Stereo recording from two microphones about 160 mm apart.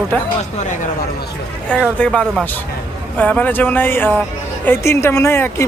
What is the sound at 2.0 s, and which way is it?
A woman's voice, 5° left (ahead or behind).